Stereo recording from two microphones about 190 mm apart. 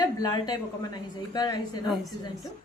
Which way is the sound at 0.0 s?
20° left (ahead or behind).